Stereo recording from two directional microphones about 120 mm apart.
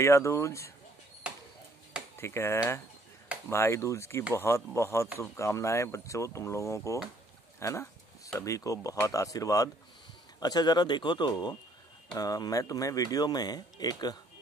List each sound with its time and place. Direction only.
0.0 s speech: 25° left (ahead or behind)
2.1 s speech: 20° left (ahead or behind)